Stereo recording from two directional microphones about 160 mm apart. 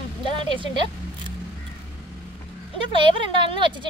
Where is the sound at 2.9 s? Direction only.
30° right (ahead or behind).